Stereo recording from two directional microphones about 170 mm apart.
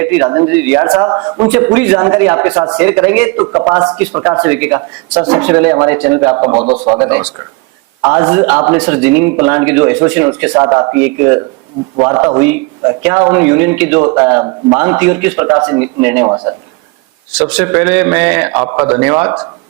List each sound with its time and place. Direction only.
0.0 s speech: 15° right (ahead or behind)
6.5 s a man's voice: 35° right (ahead or behind)
8.0 s speech: 20° right (ahead or behind)
10.5 s speech: 20° right (ahead or behind)
17.3 s speech: 10° right (ahead or behind)